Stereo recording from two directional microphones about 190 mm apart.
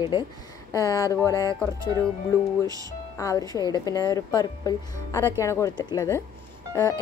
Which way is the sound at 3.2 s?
15° left (ahead or behind).